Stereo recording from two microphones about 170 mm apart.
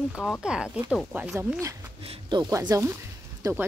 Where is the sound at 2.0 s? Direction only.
30° right (ahead or behind).